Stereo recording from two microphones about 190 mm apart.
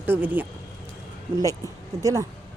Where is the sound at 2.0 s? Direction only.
15° right (ahead or behind).